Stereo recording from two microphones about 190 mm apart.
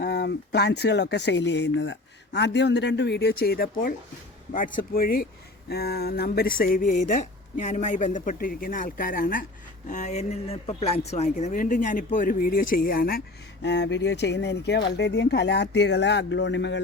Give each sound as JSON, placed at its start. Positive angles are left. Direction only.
{"t": 0.0, "sound": "speech", "side_deg": 60}